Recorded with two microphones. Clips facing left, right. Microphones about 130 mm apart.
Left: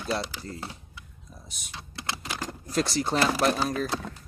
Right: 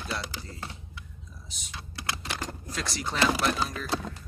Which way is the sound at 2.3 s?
5° left (ahead or behind).